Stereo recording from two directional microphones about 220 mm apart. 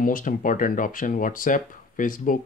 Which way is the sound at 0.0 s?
40° left (ahead or behind).